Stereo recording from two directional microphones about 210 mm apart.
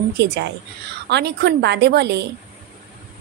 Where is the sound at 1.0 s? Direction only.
55° right (ahead or behind).